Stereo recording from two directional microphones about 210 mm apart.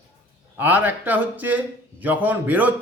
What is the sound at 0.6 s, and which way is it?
A man's voice, 5° right (ahead or behind).